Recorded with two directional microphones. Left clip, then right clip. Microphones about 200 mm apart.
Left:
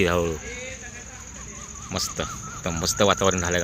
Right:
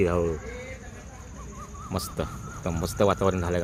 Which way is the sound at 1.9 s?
20° right (ahead or behind).